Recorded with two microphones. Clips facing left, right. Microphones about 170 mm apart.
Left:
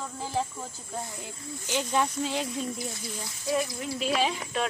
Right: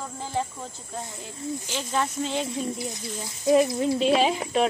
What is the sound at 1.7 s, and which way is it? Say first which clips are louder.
Speech: left 3 dB; 10° left (ahead or behind).